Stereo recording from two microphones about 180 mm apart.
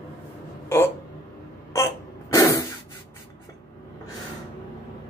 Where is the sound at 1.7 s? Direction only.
15° left (ahead or behind).